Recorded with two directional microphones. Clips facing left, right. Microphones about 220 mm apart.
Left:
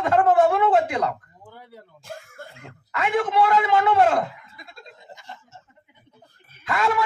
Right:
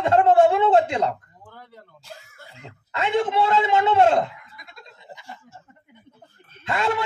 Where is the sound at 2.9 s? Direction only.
25° right (ahead or behind).